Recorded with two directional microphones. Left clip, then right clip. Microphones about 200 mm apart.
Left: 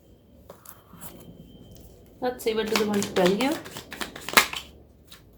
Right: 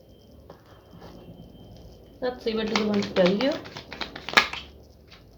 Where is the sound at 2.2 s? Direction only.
40° left (ahead or behind).